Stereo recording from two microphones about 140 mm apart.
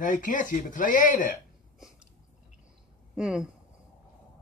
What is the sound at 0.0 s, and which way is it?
Speech, 70° left (ahead or behind).